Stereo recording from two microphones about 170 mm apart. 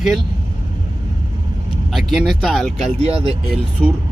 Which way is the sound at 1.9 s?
Centre (ahead or behind).